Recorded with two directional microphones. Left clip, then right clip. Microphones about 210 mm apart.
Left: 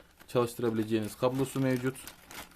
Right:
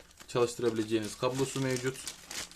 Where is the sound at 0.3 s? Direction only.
45° left (ahead or behind).